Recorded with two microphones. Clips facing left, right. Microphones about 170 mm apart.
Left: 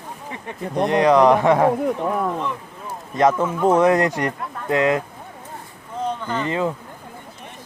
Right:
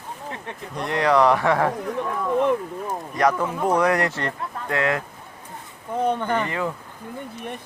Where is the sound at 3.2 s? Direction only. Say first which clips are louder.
Left 4 dB; 20° left (ahead or behind).